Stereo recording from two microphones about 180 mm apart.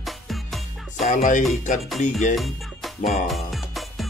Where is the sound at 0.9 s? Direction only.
45° left (ahead or behind).